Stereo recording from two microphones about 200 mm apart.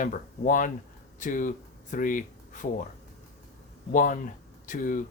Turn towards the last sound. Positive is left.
turn(degrees=40)  # may be behind; listen again after turning